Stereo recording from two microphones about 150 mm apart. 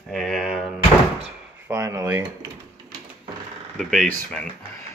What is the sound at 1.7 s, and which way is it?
Speech, 20° right (ahead or behind).